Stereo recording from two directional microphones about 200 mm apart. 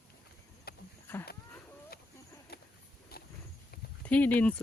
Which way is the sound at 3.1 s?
50° left (ahead or behind).